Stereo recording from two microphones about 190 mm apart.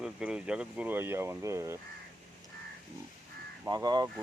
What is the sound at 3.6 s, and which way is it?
Speech, 20° right (ahead or behind).